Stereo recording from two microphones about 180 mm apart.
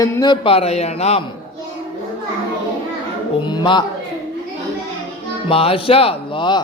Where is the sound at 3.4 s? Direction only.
25° left (ahead or behind).